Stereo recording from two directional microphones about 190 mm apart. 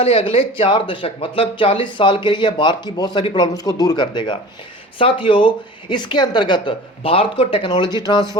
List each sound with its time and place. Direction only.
0.0 s speech: 30° left (ahead or behind)